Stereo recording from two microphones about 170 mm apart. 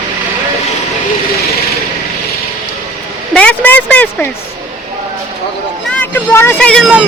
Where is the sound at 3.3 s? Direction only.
10° left (ahead or behind).